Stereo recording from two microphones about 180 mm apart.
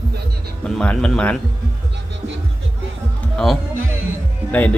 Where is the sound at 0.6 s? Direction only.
5° left (ahead or behind).